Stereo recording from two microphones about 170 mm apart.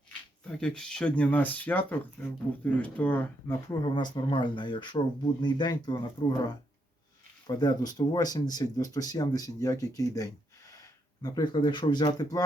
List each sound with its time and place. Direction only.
0.4 s speech: 5° left (ahead or behind)
3.7 s speech: 25° left (ahead or behind)